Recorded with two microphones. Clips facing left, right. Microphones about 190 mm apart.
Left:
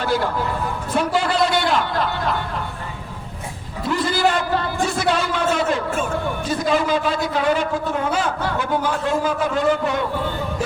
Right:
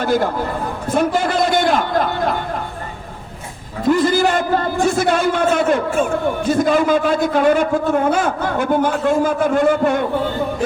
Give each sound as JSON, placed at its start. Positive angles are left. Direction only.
{"t": 0.0, "sound": "a man's voice", "side_deg": -50}
{"t": 3.8, "sound": "a man's voice", "side_deg": -45}